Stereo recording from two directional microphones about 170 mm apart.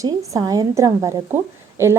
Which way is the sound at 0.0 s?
20° right (ahead or behind).